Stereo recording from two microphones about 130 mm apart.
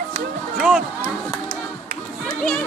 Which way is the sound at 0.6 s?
5° left (ahead or behind).